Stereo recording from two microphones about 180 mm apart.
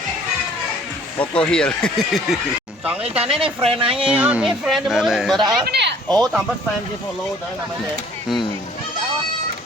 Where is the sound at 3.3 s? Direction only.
30° right (ahead or behind).